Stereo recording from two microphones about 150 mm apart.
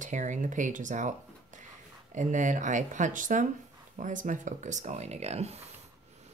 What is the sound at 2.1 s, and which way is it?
Speech, 55° right (ahead or behind).